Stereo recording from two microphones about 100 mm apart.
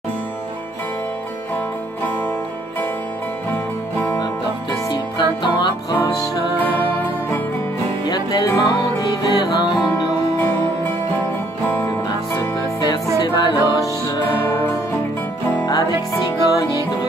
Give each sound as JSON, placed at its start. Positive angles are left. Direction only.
{"t": 5.1, "sound": "music", "side_deg": 45}
{"t": 8.1, "sound": "music", "side_deg": 40}
{"t": 9.2, "sound": "music", "side_deg": 40}
{"t": 9.9, "sound": "music", "side_deg": 30}
{"t": 12.4, "sound": "music", "side_deg": 35}
{"t": 15.6, "sound": "music", "side_deg": 40}